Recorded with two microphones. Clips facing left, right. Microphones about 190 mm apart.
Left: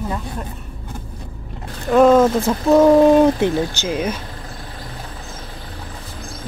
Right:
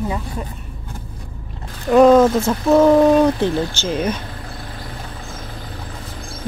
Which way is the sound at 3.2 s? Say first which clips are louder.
Left 1 dB; 15° left (ahead or behind).